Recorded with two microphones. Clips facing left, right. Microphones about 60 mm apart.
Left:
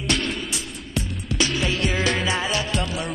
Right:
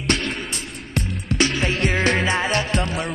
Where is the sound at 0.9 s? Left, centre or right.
Right.